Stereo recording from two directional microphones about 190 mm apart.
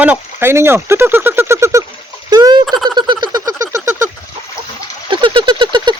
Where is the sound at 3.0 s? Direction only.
25° right (ahead or behind).